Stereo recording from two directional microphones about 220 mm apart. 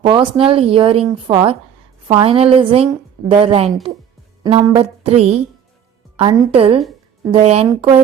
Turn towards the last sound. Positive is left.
turn(degrees=-20)  # may be behind; listen again after turning